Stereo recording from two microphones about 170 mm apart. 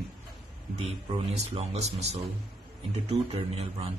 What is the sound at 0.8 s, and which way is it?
Speech, 40° right (ahead or behind).